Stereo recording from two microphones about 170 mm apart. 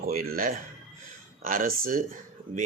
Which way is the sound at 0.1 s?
60° right (ahead or behind).